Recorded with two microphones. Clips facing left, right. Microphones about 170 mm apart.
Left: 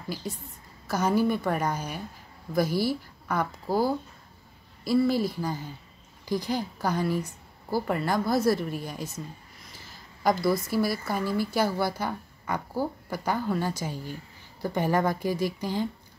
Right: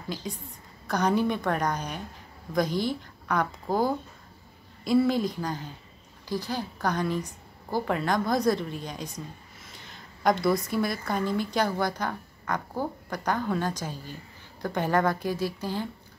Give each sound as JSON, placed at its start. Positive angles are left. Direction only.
{"t": 0.8, "sound": "a woman's voice", "side_deg": 5}
{"t": 3.7, "sound": "speech", "side_deg": -20}
{"t": 4.8, "sound": "a woman's voice", "side_deg": 5}